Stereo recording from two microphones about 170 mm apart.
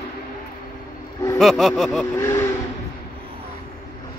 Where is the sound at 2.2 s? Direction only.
15° left (ahead or behind).